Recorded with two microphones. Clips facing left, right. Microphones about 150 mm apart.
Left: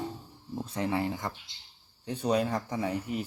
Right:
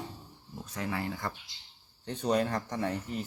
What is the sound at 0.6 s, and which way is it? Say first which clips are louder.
Speech: left 5 dB; 30° left (ahead or behind).